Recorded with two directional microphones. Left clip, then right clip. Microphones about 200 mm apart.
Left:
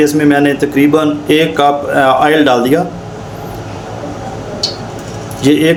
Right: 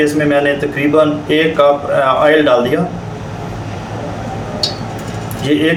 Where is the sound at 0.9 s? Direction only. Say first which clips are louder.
Left 1 dB; 55° left (ahead or behind).